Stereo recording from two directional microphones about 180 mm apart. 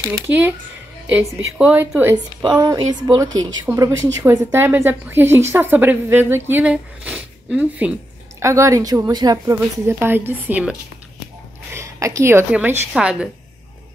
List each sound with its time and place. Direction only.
0.0 s a woman's voice: 10° right (ahead or behind)
2.4 s a woman's voice: 20° right (ahead or behind); by 13.3 s 5° right (ahead or behind)